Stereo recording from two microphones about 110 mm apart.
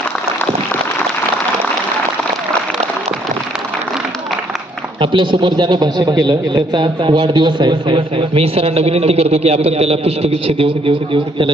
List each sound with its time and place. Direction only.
4.9 s a man's voice: 45° right (ahead or behind)